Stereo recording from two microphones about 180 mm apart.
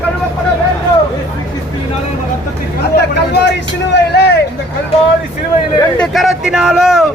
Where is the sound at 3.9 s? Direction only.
65° left (ahead or behind).